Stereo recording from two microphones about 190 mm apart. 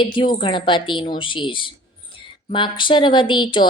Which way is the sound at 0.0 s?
25° left (ahead or behind).